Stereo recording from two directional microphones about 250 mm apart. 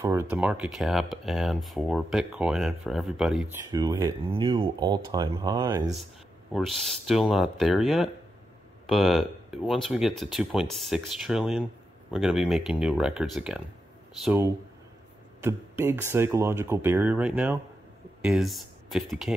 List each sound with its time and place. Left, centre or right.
0.0 s speech: centre
3.7 s speech: centre